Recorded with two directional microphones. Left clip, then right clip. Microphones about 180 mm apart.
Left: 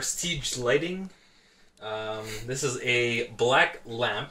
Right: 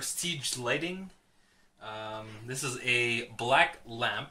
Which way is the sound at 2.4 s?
30° right (ahead or behind).